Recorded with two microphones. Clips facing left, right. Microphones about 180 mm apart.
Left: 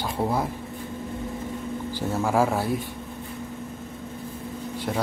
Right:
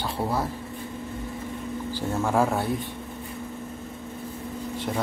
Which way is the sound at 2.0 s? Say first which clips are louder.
Left 1 dB; centre (ahead or behind).